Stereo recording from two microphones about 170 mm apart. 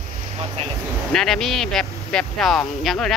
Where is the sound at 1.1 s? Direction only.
Centre (ahead or behind).